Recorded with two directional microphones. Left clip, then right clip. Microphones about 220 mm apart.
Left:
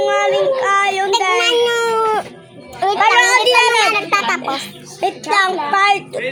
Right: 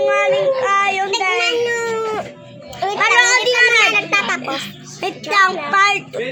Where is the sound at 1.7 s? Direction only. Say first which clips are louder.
Left 5 dB; 20° left (ahead or behind).